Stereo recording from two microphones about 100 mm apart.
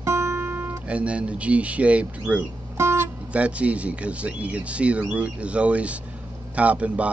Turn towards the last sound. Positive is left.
turn(degrees=-10)  # may be behind; listen again after turning